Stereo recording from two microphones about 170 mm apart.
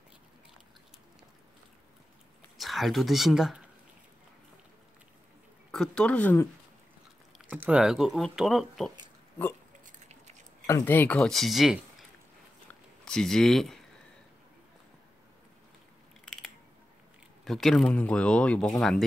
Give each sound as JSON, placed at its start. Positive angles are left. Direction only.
{"t": 2.5, "sound": "speech", "side_deg": 0}
{"t": 5.7, "sound": "speech", "side_deg": 5}
{"t": 7.4, "sound": "speech", "side_deg": -10}
{"t": 9.8, "sound": "patter", "side_deg": -45}
{"t": 10.7, "sound": "speech", "side_deg": 15}
{"t": 17.5, "sound": "speech", "side_deg": 5}